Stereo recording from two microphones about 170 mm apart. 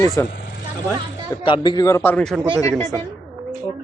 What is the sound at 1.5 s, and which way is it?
Speech, 30° left (ahead or behind).